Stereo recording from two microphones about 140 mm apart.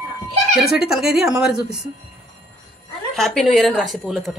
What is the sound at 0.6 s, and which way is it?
A woman's voice, 5° right (ahead or behind).